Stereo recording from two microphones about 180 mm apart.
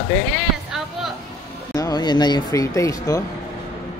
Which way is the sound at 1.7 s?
20° left (ahead or behind).